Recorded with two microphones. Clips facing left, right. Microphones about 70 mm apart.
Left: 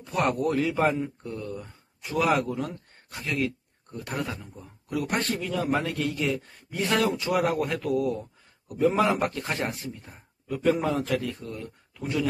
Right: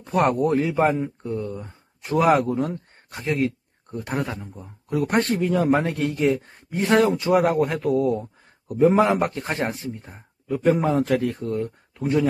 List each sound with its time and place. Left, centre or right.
0.0 s speech: right
11.0 s speech: right